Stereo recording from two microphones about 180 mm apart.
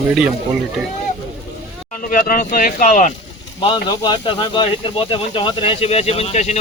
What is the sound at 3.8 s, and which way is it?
Speech, 25° left (ahead or behind).